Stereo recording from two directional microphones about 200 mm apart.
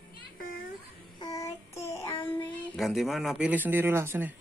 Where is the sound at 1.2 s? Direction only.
15° left (ahead or behind).